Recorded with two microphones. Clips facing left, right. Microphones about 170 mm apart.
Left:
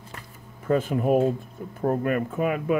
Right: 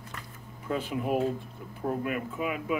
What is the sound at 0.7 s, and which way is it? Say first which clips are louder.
Speech: left 8 dB; 45° left (ahead or behind).